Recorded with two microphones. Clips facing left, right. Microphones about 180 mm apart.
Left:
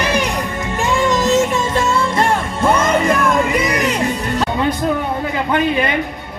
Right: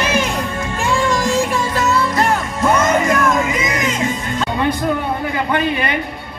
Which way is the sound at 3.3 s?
60° left (ahead or behind).